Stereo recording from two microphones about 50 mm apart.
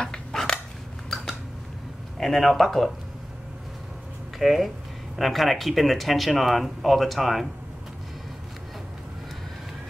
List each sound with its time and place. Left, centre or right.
0.0 s a sound: centre
2.1 s speech: centre
4.4 s speech: centre